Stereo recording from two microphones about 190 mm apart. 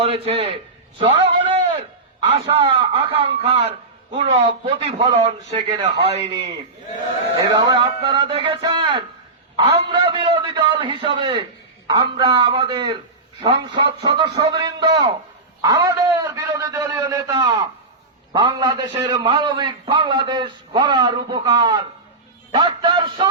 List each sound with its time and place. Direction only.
0.0 s a man's voice: 30° right (ahead or behind)
1.2 s a sound: 25° right (ahead or behind)
2.3 s a man's voice: 30° right (ahead or behind)